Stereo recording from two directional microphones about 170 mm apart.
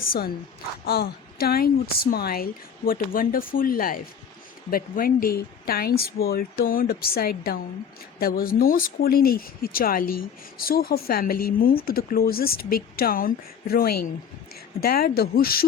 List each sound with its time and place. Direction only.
0.9 s speech: 65° left (ahead or behind)